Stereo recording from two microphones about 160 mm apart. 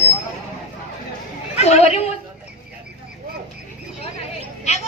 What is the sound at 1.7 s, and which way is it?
Chatter, 40° left (ahead or behind).